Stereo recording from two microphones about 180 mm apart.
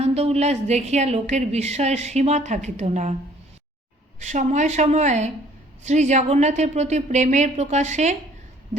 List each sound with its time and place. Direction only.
0.0 s a woman's voice: 35° right (ahead or behind)
4.2 s a woman's voice: 40° right (ahead or behind)